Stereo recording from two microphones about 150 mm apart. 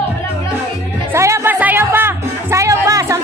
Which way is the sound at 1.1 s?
20° right (ahead or behind).